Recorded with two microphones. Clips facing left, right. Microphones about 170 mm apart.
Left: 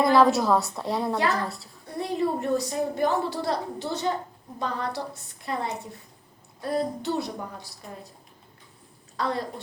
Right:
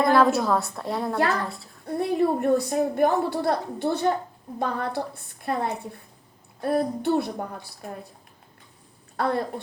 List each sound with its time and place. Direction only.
0.0 s a woman's voice: centre (ahead or behind)
2.0 s a woman's voice: 55° right (ahead or behind)
9.1 s a woman's voice: 55° right (ahead or behind)